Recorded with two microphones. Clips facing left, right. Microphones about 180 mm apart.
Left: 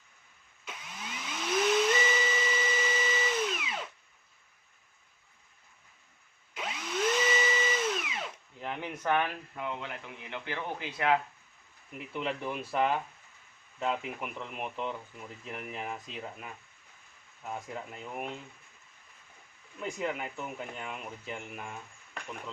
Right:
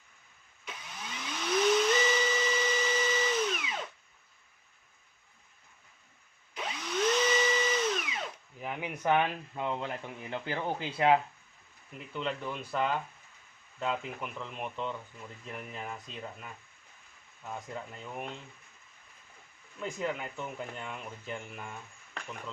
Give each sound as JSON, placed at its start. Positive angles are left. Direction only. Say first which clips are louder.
{"t": 1.1, "sound": "steam whistle", "louder": "right 1 dB", "side_deg": 5}
{"t": 6.5, "sound": "a sound", "louder": "even", "side_deg": 5}
{"t": 8.5, "sound": "speech", "louder": "even", "side_deg": -10}
{"t": 9.6, "sound": "speech", "louder": "right 4 dB", "side_deg": -35}
{"t": 11.9, "sound": "speech", "louder": "left 1 dB", "side_deg": 10}
{"t": 19.8, "sound": "speech", "louder": "even", "side_deg": 5}